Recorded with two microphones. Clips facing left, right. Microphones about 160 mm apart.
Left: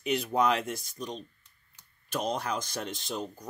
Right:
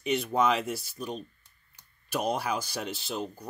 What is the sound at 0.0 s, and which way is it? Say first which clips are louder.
Speech: right 1 dB; centre (ahead or behind).